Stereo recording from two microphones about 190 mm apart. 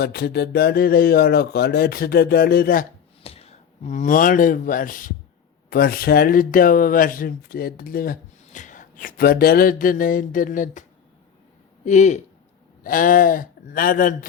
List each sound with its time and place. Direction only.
0.0 s speech: 55° left (ahead or behind)
3.2 s speech: 30° left (ahead or behind)
11.9 s speech: 40° left (ahead or behind)